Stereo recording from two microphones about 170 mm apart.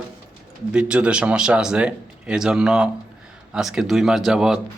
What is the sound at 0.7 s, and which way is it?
Speech, 5° right (ahead or behind).